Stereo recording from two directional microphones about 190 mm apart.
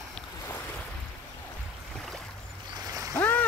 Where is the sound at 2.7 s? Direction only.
20° right (ahead or behind).